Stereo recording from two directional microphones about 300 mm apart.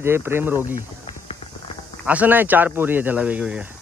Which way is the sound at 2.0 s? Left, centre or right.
Centre.